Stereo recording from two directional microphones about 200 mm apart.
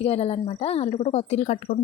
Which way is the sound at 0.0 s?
30° left (ahead or behind).